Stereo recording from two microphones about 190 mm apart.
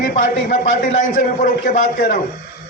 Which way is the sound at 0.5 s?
40° left (ahead or behind).